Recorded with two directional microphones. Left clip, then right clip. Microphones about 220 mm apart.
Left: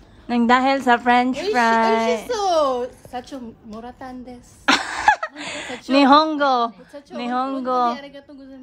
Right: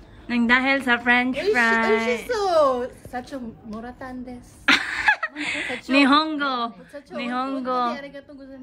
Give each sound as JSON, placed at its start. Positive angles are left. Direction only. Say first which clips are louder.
{"t": 0.3, "sound": "a woman's voice", "louder": "left 3 dB", "side_deg": 15}